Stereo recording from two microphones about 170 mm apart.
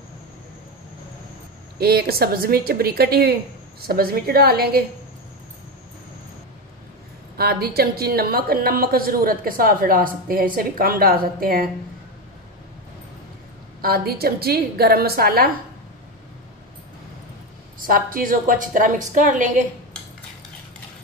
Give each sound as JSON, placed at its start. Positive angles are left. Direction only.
{"t": 1.8, "sound": "a woman's voice", "side_deg": -65}
{"t": 7.3, "sound": "a woman's voice", "side_deg": -65}
{"t": 13.7, "sound": "a woman's voice", "side_deg": -65}
{"t": 17.7, "sound": "a woman's voice", "side_deg": -55}